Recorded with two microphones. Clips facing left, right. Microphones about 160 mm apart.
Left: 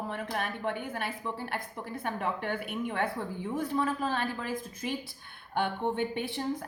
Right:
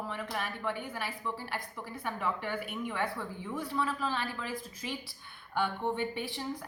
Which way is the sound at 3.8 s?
50° left (ahead or behind).